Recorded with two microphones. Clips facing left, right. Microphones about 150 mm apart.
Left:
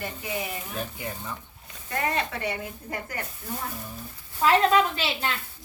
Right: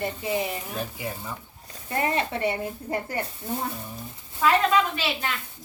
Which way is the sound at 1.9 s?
25° right (ahead or behind).